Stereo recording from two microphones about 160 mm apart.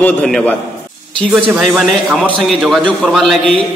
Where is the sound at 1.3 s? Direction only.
5° right (ahead or behind).